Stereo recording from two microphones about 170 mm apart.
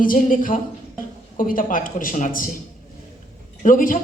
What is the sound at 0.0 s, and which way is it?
Speech, 55° left (ahead or behind).